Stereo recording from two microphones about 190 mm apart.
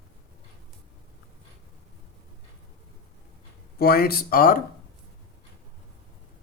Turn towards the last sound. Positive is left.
turn(degrees=50)  # may be behind; listen again after turning